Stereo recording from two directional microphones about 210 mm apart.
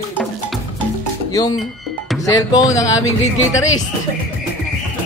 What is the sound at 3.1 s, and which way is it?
Speech, 70° left (ahead or behind).